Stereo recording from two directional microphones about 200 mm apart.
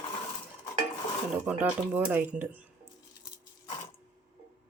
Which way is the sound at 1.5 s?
5° right (ahead or behind).